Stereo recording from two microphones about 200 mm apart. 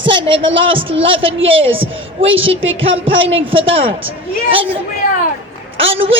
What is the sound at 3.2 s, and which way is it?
Speech, 70° right (ahead or behind).